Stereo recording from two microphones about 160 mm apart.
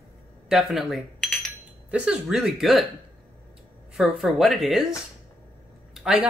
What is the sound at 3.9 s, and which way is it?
Speech, centre (ahead or behind).